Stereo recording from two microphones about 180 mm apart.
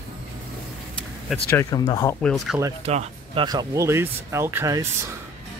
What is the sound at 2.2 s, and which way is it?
Speech, centre (ahead or behind).